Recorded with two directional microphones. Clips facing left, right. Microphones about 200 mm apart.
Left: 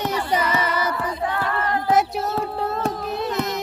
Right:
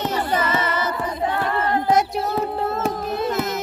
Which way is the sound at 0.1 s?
10° left (ahead or behind).